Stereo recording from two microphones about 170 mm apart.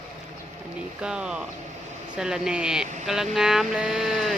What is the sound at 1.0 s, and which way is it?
Speech, 5° right (ahead or behind).